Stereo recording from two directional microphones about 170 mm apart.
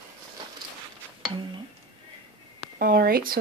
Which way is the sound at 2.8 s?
60° right (ahead or behind).